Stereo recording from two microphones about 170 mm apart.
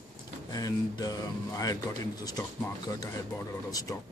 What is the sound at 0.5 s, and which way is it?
A man's voice, 20° left (ahead or behind).